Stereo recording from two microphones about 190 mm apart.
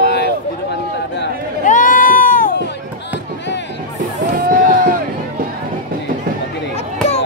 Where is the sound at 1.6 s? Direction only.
45° left (ahead or behind).